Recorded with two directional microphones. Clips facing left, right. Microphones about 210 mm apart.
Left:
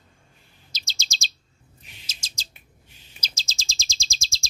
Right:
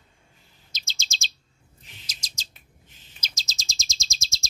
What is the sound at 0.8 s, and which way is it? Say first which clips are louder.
Chirp: left 1 dB; 35° left (ahead or behind).